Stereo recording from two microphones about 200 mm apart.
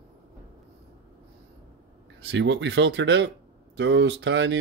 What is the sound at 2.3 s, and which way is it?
Speech, 60° right (ahead or behind).